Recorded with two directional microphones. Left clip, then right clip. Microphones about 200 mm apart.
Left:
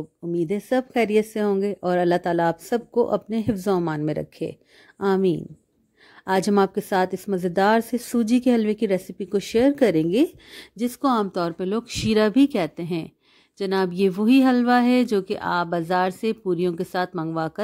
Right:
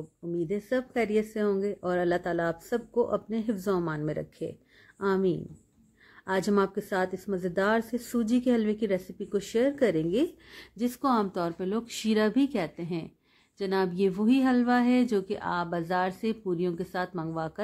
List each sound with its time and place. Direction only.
0.4 s speech: 40° left (ahead or behind)